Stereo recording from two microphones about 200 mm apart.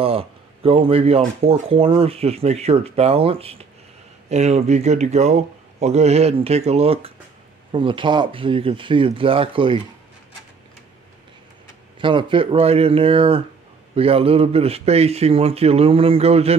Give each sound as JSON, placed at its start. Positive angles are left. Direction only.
{"t": 0.0, "sound": "speech", "side_deg": -30}
{"t": 12.0, "sound": "speech", "side_deg": -25}